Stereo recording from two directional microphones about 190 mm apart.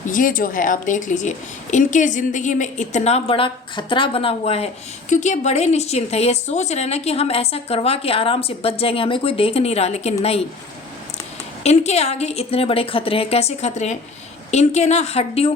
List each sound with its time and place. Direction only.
0.1 s a woman's voice: 45° left (ahead or behind)
11.6 s a woman's voice: 35° left (ahead or behind)